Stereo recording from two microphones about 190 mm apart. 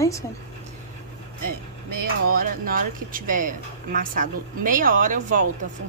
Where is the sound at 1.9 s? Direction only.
50° right (ahead or behind).